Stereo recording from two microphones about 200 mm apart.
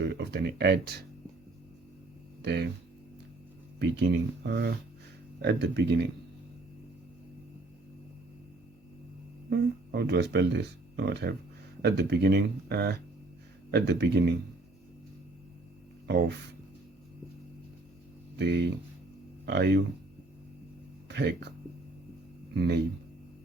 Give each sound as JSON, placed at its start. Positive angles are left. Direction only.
{"t": 0.0, "sound": "speech", "side_deg": -55}
{"t": 2.4, "sound": "speech", "side_deg": -55}
{"t": 3.8, "sound": "speech", "side_deg": -60}
{"t": 9.5, "sound": "speech", "side_deg": -55}
{"t": 16.0, "sound": "speech", "side_deg": -55}
{"t": 18.3, "sound": "speech", "side_deg": -60}
{"t": 21.1, "sound": "speech", "side_deg": -55}
{"t": 22.5, "sound": "speech", "side_deg": -55}